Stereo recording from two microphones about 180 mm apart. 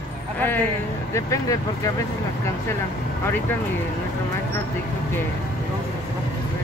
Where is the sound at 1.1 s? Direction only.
15° left (ahead or behind).